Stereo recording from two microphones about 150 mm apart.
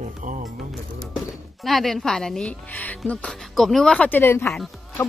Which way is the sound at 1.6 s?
Centre (ahead or behind).